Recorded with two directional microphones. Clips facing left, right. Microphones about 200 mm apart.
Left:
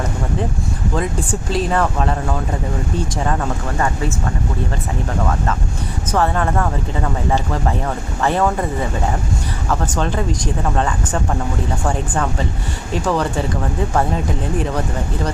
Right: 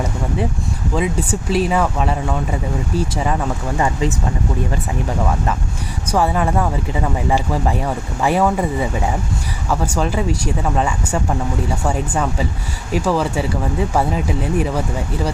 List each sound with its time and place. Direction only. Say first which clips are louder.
0.9 s speech: right 3 dB; 5° right (ahead or behind)
6.1 s speech: right 1 dB; 10° right (ahead or behind)